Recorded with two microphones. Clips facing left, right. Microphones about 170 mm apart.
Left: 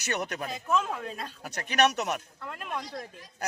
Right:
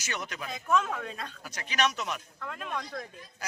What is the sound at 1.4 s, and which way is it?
Speech, 65° left (ahead or behind).